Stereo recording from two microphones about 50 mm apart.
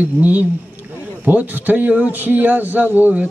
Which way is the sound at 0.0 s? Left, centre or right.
Right.